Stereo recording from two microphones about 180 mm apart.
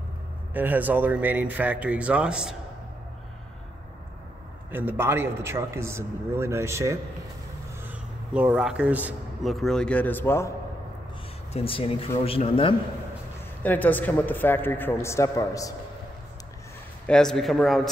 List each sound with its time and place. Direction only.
0.5 s a man's voice: 10° right (ahead or behind)
4.6 s a man's voice: 10° right (ahead or behind); by 10.5 s 15° left (ahead or behind)
11.5 s speech: 30° left (ahead or behind)
13.6 s a man's voice: 10° left (ahead or behind)
17.1 s speech: 5° left (ahead or behind)